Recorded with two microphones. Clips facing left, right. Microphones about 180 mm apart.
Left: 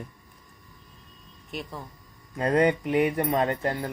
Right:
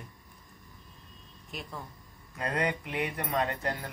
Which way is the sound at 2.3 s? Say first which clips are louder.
Left 9 dB; 30° left (ahead or behind).